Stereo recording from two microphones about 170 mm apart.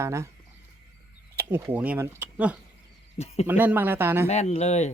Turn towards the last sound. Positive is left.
turn(degrees=40)  # may be behind; listen again after turning